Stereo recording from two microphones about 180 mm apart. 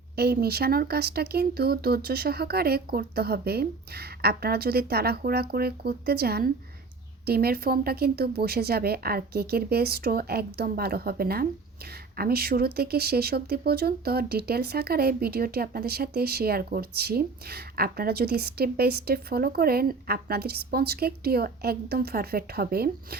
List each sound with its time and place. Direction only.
0.2 s speech: 60° right (ahead or behind)